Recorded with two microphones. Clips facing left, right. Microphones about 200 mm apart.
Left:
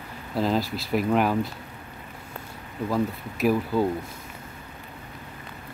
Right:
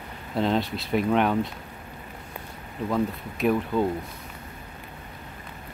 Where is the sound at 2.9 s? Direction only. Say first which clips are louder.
Even; 5° left (ahead or behind).